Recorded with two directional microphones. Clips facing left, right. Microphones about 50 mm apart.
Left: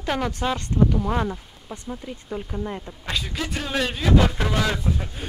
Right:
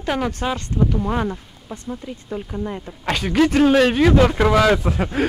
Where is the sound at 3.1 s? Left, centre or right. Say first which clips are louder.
Right 11 dB; right.